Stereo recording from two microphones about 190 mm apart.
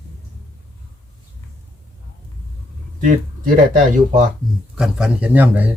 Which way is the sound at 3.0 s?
45° right (ahead or behind).